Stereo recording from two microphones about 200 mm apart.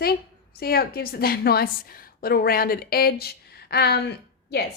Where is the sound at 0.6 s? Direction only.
50° left (ahead or behind).